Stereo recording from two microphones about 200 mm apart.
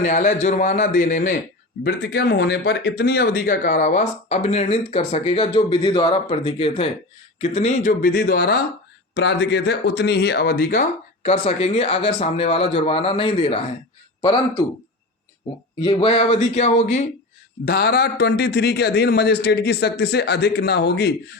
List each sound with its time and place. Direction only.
0.0 s speech: 40° left (ahead or behind)
1.8 s a man's voice: 55° left (ahead or behind)
11.2 s speech: 30° left (ahead or behind)
15.8 s speech: 25° left (ahead or behind)
17.7 s a man's voice: 50° left (ahead or behind)